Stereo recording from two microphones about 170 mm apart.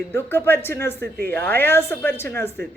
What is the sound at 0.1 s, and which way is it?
A man's voice, 15° left (ahead or behind).